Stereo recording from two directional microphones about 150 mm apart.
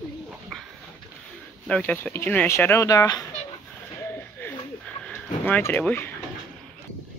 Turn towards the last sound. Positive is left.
turn(degrees=10)  # may be behind; listen again after turning